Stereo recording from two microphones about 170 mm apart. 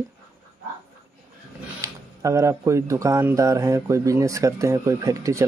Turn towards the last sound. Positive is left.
turn(degrees=-20)  # may be behind; listen again after turning